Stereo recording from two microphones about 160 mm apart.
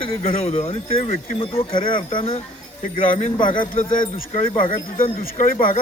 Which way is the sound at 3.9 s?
60° left (ahead or behind).